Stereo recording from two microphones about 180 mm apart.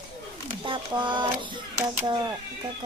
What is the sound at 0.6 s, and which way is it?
Speech, 25° right (ahead or behind).